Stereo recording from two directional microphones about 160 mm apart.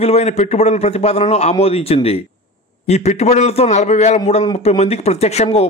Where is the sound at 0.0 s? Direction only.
40° left (ahead or behind).